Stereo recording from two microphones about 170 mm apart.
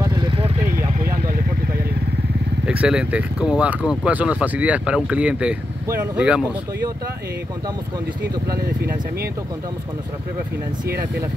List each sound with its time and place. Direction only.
0.0 s vehicle: 25° right (ahead or behind)
2.6 s speech: 5° right (ahead or behind)
8.5 s speech: 65° right (ahead or behind)